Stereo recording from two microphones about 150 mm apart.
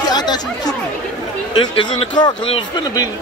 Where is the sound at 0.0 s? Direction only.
25° left (ahead or behind).